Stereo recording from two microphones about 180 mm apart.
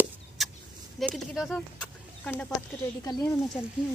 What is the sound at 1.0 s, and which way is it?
Speech, centre (ahead or behind).